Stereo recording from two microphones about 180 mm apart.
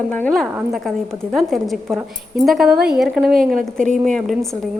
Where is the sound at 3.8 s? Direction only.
45° right (ahead or behind).